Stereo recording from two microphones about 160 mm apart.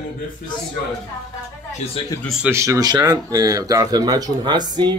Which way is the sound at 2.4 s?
15° right (ahead or behind).